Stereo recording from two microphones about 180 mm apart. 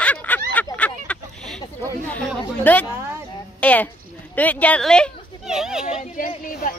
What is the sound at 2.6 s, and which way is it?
A woman's voice, 10° left (ahead or behind).